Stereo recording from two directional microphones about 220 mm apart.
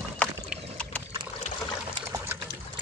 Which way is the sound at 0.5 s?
5° left (ahead or behind).